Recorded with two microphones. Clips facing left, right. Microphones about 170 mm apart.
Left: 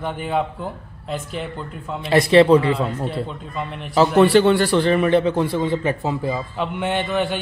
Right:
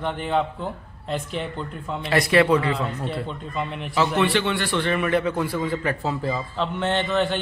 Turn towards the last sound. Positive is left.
turn(degrees=10)  # may be behind; listen again after turning